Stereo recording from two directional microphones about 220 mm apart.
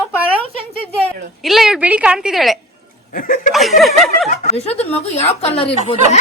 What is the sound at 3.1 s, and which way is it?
Speech, 35° left (ahead or behind).